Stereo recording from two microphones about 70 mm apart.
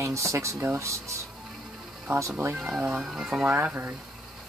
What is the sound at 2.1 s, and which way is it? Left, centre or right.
Speech, right.